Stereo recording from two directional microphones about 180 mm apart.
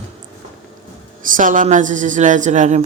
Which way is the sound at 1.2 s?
45° right (ahead or behind).